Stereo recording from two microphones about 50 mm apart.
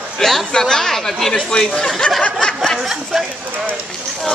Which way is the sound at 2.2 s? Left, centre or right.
Left.